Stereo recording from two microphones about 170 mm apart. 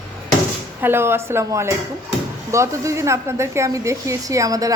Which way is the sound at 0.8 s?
15° right (ahead or behind).